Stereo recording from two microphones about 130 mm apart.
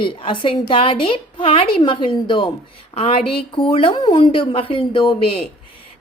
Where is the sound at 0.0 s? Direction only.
40° left (ahead or behind).